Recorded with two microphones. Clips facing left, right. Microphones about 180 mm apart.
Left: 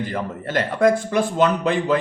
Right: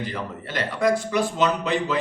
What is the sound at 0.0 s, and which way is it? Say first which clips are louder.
Speech: left 5 dB; 50° left (ahead or behind).